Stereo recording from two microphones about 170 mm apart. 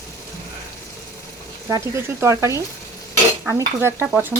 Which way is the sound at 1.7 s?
20° right (ahead or behind).